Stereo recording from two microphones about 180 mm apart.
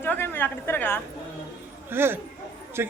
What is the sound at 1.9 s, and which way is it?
A man's voice, 15° right (ahead or behind).